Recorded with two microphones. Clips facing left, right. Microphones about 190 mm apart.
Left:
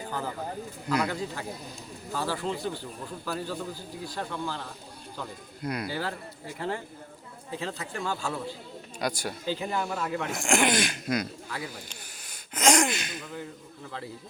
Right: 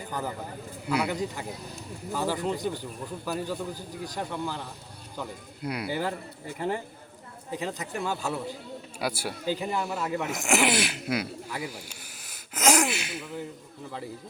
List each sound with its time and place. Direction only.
0.9 s speech: 10° right (ahead or behind)
5.6 s speech: 10° right (ahead or behind)